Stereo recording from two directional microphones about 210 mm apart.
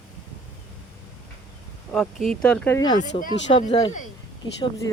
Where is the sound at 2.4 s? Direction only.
5° left (ahead or behind).